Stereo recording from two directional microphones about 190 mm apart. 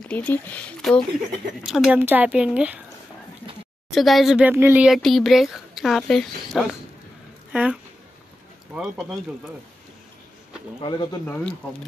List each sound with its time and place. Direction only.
0.1 s speech: 10° left (ahead or behind)
1.6 s a woman's voice: 5° right (ahead or behind)
3.9 s speech: centre (ahead or behind)
10.8 s speech: 25° left (ahead or behind)
11.2 s speech: 10° left (ahead or behind)